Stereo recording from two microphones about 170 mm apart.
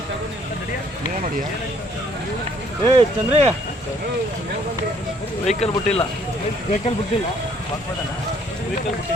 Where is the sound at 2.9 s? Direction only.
35° right (ahead or behind).